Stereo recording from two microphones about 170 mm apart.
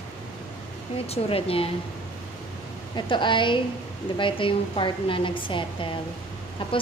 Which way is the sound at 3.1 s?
30° left (ahead or behind).